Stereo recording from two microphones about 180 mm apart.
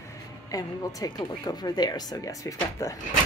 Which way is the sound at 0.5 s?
20° left (ahead or behind).